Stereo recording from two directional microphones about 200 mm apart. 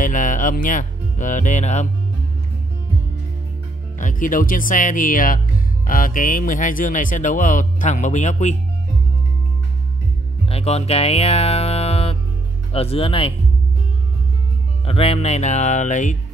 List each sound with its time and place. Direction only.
0.0 s speech: 40° left (ahead or behind)
4.0 s speech: 40° left (ahead or behind)
10.4 s speech: 30° left (ahead or behind)
14.9 s speech: 30° left (ahead or behind)